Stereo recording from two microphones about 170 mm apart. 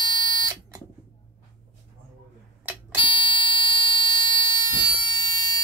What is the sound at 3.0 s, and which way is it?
Buzzer, 30° left (ahead or behind).